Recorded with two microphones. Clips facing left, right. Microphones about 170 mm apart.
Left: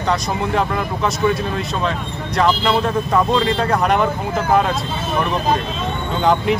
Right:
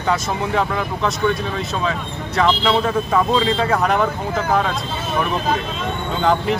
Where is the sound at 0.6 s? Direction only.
Centre (ahead or behind).